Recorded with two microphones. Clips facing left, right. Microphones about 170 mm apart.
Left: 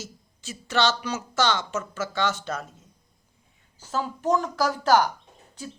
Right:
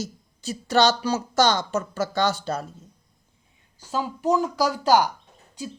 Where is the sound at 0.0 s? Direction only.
40° right (ahead or behind).